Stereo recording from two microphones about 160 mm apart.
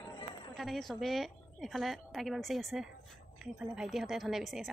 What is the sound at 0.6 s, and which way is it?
Speech, centre (ahead or behind).